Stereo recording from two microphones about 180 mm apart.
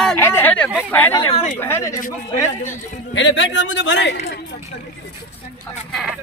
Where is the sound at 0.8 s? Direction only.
10° left (ahead or behind).